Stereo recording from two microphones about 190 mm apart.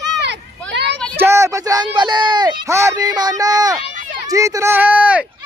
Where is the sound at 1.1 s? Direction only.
15° right (ahead or behind).